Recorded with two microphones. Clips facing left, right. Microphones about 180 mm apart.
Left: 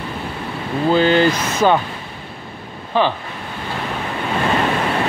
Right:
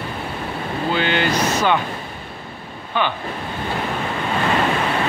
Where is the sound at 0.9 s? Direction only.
35° left (ahead or behind).